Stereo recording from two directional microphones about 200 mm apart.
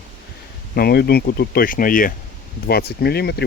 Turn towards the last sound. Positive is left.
turn(degrees=55)  # may be behind; listen again after turning